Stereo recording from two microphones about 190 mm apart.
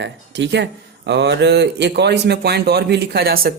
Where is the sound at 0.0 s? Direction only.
70° right (ahead or behind).